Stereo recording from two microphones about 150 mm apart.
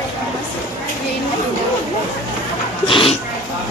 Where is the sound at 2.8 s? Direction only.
35° left (ahead or behind).